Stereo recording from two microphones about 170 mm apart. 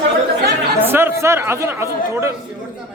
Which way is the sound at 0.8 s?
15° right (ahead or behind).